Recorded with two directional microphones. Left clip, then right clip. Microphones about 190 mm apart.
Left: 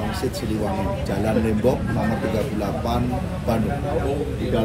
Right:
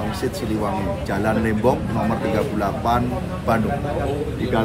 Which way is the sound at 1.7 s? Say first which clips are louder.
Right 3 dB; 10° right (ahead or behind).